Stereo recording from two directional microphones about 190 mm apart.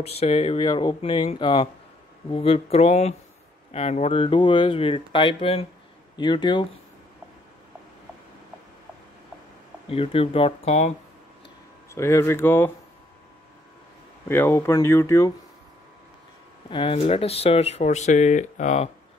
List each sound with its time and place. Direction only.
0.0 s speech: 30° left (ahead or behind)
9.8 s speech: 30° left (ahead or behind)
11.9 s speech: 15° left (ahead or behind)
14.2 s speech: 10° left (ahead or behind)
16.6 s speech: 25° left (ahead or behind)